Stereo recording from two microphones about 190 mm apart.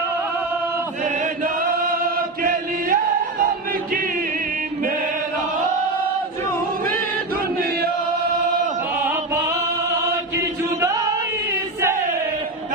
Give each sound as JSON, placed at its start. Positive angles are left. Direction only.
{"t": 1.0, "sound": "chant", "side_deg": -45}
{"t": 9.0, "sound": "music", "side_deg": -15}
{"t": 10.3, "sound": "chant", "side_deg": -15}